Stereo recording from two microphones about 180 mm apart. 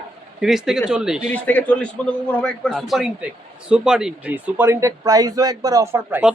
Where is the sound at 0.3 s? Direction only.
5° right (ahead or behind).